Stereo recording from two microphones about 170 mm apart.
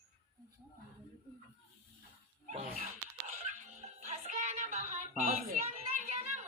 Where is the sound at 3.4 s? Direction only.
45° right (ahead or behind).